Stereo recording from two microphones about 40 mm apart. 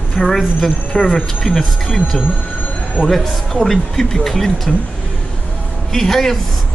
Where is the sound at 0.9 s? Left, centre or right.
Left.